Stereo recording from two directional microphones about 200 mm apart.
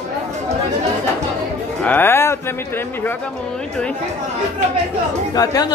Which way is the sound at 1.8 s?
10° left (ahead or behind).